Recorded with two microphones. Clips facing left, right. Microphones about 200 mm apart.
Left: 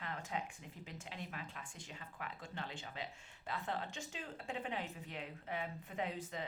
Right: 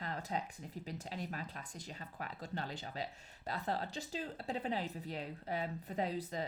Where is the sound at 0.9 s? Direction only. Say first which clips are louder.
Right 5 dB; 40° right (ahead or behind).